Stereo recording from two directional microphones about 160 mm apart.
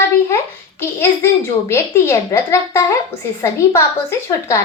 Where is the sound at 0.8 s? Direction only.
15° left (ahead or behind).